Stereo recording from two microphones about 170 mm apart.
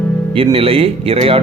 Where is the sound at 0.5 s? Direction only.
35° right (ahead or behind).